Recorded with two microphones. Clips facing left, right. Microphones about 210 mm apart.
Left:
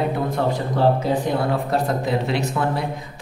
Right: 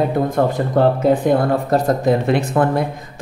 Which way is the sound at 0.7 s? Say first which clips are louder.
Right 5 dB; 50° right (ahead or behind).